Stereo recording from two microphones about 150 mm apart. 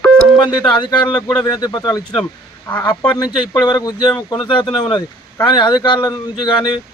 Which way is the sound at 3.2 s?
25° left (ahead or behind).